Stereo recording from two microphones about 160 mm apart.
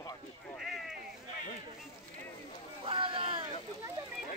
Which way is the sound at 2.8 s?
35° right (ahead or behind).